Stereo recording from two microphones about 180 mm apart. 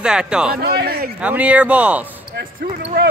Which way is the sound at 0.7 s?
60° right (ahead or behind).